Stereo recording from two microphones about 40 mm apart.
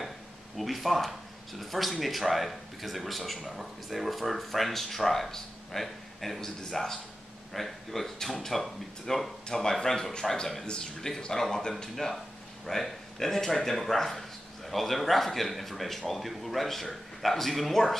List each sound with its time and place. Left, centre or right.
0.6 s speech: centre